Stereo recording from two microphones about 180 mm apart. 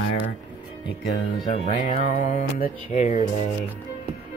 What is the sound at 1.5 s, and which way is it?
Speech, 35° left (ahead or behind).